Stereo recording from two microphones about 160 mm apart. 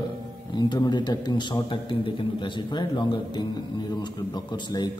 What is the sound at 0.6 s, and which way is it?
A man's voice, 25° left (ahead or behind).